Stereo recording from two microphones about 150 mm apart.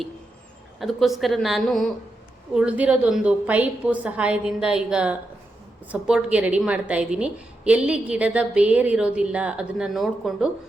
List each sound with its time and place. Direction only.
0.8 s a woman's voice: centre (ahead or behind)